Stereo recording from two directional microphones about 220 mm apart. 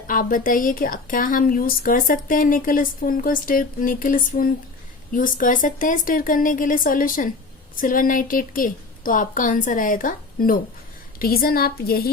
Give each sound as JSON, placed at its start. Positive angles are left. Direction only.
{"t": 0.1, "sound": "a woman's voice", "side_deg": 40}